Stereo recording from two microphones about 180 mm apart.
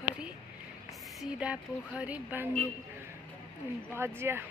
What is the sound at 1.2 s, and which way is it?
Speech, 5° right (ahead or behind).